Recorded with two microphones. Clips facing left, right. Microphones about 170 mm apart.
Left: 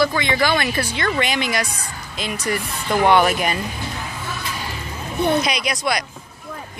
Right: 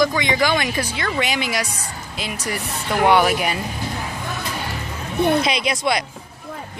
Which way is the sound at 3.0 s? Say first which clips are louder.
Even; 10° right (ahead or behind).